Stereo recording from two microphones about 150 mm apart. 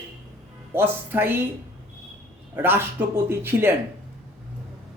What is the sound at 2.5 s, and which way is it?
Speech, 15° right (ahead or behind).